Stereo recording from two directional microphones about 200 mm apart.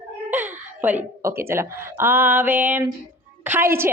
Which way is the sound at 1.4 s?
15° right (ahead or behind).